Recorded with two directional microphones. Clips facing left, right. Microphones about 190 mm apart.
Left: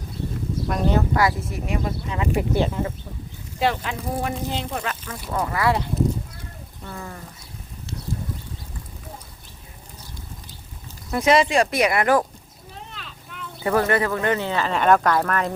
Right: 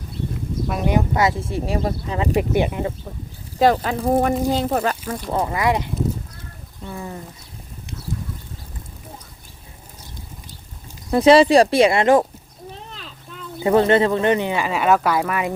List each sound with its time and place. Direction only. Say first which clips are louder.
0.7 s speech: right 1 dB; 15° right (ahead or behind); by 2.3 s 35° right (ahead or behind)
2.3 s speech: right 2 dB; 15° right (ahead or behind)
3.6 s speech: right 7 dB; 40° right (ahead or behind)
5.3 s speech: right 2 dB; 25° right (ahead or behind)
11.1 s speech: right 7 dB; 30° right (ahead or behind)
12.9 s a sound: right 2 dB; 35° right (ahead or behind)
13.6 s speech: right 5 dB; 20° right (ahead or behind)